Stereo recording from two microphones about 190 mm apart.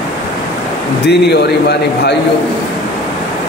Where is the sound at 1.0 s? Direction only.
60° left (ahead or behind).